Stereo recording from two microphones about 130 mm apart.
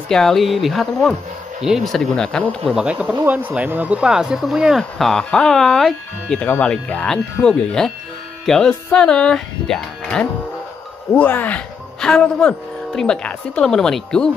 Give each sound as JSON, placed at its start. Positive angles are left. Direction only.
{"t": 0.1, "sound": "speech", "side_deg": 0}
{"t": 2.7, "sound": "speech", "side_deg": -10}